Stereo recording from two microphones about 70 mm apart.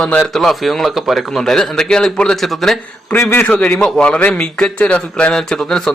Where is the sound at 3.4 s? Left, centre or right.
Centre.